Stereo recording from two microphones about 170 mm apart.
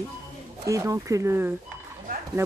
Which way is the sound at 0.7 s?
20° right (ahead or behind).